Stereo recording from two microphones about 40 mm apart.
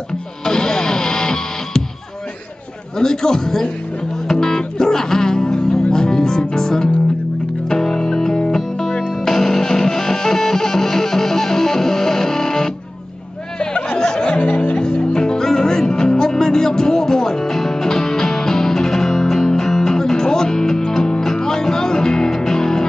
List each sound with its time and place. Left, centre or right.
0.5 s music: centre
3.0 s a man's voice: centre
4.3 s music: centre; by 14.8 s left
14.8 s music: centre